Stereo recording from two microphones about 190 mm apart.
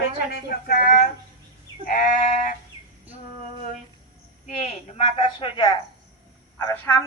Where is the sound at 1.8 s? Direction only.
45° left (ahead or behind).